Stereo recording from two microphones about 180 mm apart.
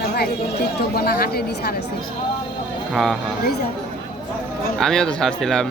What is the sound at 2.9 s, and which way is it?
Speech, centre (ahead or behind).